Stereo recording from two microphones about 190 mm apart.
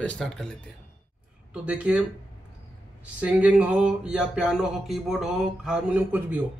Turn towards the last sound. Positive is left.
turn(degrees=-5)  # may be behind; listen again after turning